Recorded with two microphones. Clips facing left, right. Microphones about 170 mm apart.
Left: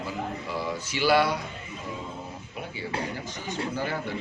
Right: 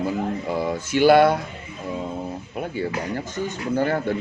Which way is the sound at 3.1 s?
50° right (ahead or behind).